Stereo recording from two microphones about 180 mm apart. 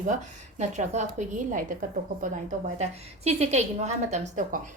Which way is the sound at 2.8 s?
35° right (ahead or behind).